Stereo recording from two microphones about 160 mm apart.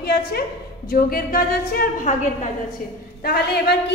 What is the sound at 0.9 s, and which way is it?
A woman's voice, 65° left (ahead or behind).